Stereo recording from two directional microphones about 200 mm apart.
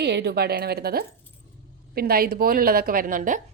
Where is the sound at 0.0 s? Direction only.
55° right (ahead or behind).